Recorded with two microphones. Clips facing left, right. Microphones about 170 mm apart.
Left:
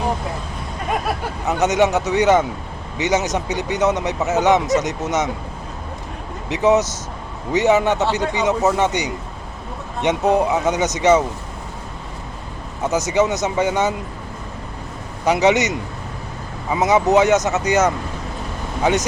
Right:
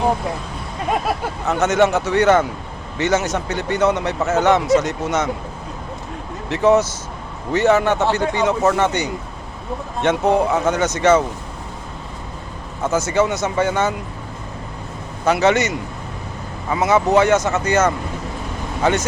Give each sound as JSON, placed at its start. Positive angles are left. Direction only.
{"t": 1.5, "sound": "speech", "side_deg": 15}
{"t": 6.5, "sound": "speech", "side_deg": 20}
{"t": 12.8, "sound": "speech", "side_deg": 15}
{"t": 15.2, "sound": "speech", "side_deg": 15}